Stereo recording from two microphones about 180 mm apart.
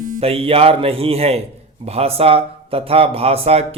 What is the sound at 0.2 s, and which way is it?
Speech, 30° right (ahead or behind).